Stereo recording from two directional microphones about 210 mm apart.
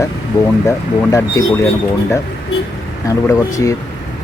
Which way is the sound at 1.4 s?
15° left (ahead or behind).